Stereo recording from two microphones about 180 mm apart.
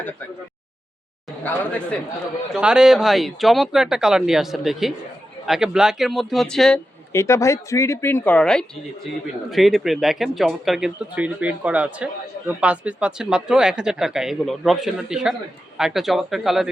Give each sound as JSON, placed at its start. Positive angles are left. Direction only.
{"t": 1.5, "sound": "speech", "side_deg": 10}
{"t": 2.5, "sound": "speech", "side_deg": -5}
{"t": 7.1, "sound": "speech", "side_deg": 15}